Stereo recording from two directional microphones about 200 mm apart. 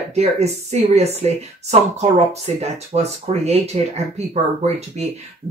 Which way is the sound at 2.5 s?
30° right (ahead or behind).